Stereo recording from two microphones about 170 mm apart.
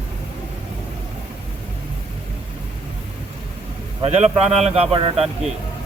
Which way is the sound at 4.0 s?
35° right (ahead or behind).